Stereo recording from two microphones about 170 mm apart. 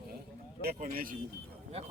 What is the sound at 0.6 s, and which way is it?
Speech, 60° right (ahead or behind).